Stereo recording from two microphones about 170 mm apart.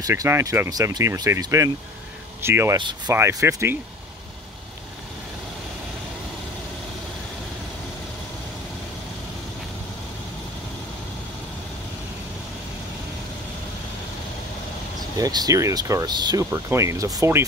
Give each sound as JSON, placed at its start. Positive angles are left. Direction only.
{"t": 0.0, "sound": "speech", "side_deg": -15}
{"t": 2.8, "sound": "speech", "side_deg": -25}
{"t": 15.1, "sound": "speech", "side_deg": -20}